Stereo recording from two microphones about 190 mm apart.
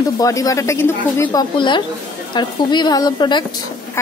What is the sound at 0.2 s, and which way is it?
A woman's voice, 20° left (ahead or behind).